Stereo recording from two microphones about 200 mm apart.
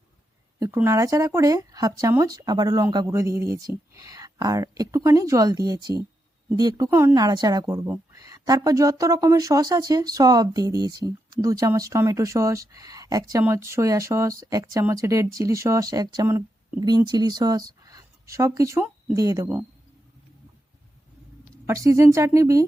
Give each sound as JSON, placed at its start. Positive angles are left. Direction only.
{"t": 0.6, "sound": "speech", "side_deg": -15}
{"t": 21.7, "sound": "speech", "side_deg": -15}